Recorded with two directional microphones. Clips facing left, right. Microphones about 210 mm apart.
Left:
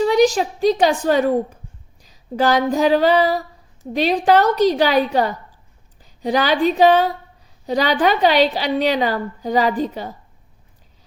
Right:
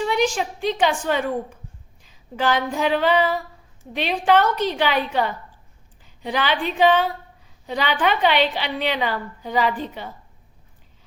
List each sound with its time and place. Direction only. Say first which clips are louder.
0.0 s a woman's voice: left 7 dB; 40° left (ahead or behind)
2.0 s female singing: left 6 dB; 40° left (ahead or behind)
3.9 s a woman's voice: left 4 dB; 40° left (ahead or behind)